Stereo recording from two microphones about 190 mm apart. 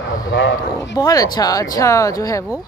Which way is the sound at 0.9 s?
20° left (ahead or behind).